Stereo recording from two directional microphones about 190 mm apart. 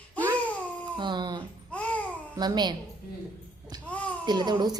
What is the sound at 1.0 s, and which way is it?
Speech, 25° right (ahead or behind).